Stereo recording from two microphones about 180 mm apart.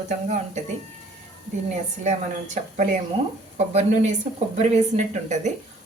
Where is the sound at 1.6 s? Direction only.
40° right (ahead or behind).